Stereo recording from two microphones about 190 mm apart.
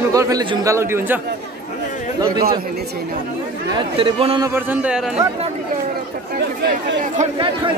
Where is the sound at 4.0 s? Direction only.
30° right (ahead or behind).